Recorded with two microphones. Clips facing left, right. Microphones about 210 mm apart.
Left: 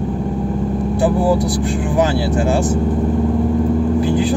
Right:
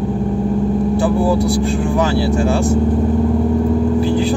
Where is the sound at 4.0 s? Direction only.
15° left (ahead or behind).